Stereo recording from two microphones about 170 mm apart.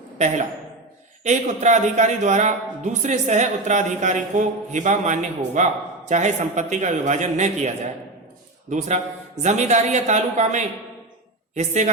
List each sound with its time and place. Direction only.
1.2 s speech: 45° right (ahead or behind)
8.7 s speech: 45° right (ahead or behind)